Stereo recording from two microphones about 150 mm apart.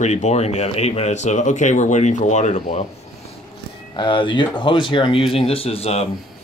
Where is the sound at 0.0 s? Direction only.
50° left (ahead or behind).